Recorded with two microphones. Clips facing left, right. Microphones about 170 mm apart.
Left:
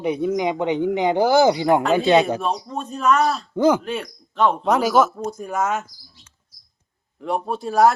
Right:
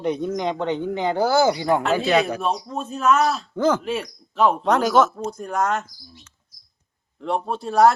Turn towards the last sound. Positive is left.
turn(degrees=0)  # may be behind; listen again after turning